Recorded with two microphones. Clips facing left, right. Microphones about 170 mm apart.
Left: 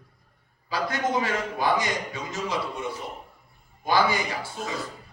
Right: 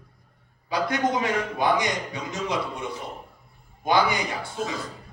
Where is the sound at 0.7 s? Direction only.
20° right (ahead or behind).